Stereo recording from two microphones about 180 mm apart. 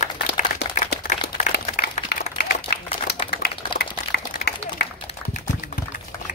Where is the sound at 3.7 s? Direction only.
60° left (ahead or behind).